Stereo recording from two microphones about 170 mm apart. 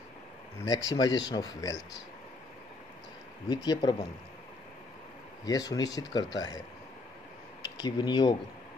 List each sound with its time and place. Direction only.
0.8 s speech: 20° left (ahead or behind)
3.4 s speech: 25° left (ahead or behind)
5.4 s speech: 20° left (ahead or behind)
7.6 s speech: 25° left (ahead or behind)